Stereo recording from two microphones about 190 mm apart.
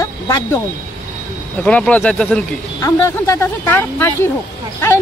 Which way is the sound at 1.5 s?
5° left (ahead or behind).